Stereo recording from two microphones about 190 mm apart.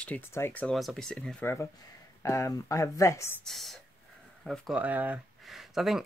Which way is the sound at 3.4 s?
Centre (ahead or behind).